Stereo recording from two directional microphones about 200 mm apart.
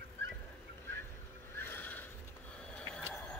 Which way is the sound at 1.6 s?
10° left (ahead or behind).